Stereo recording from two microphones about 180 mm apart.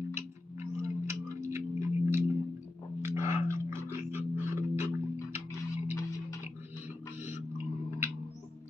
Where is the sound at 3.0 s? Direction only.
15° right (ahead or behind).